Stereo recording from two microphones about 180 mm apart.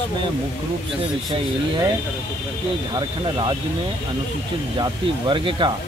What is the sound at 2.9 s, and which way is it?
Speech, 25° right (ahead or behind).